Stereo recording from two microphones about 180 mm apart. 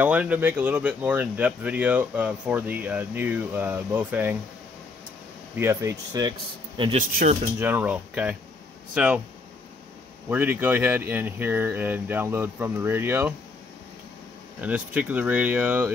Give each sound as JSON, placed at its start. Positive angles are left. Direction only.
{"t": 0.0, "sound": "speech", "side_deg": -10}
{"t": 5.6, "sound": "speech", "side_deg": -15}
{"t": 7.1, "sound": "speech", "side_deg": -50}
{"t": 7.5, "sound": "speech", "side_deg": -10}
{"t": 10.3, "sound": "speech", "side_deg": -10}
{"t": 14.6, "sound": "speech", "side_deg": -10}